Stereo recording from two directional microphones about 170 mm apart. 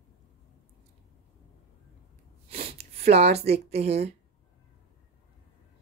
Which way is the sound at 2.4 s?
35° right (ahead or behind).